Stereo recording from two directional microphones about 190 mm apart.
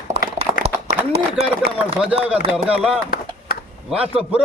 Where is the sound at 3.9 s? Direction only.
5° right (ahead or behind).